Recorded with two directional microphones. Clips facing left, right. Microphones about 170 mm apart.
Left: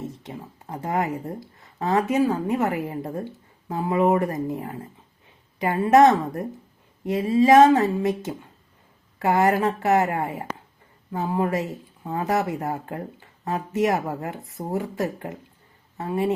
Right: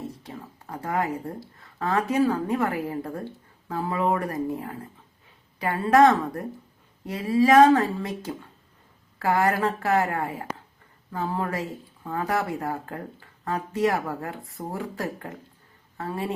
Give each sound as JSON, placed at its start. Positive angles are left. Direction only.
{"t": 0.1, "sound": "speech", "side_deg": 20}